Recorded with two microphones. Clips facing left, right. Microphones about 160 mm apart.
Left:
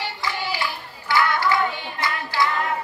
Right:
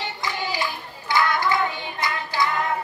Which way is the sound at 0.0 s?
20° right (ahead or behind).